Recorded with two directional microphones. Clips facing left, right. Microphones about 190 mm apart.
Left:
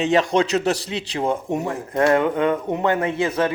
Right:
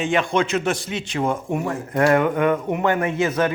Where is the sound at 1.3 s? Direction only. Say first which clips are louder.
Left 1 dB; 20° left (ahead or behind).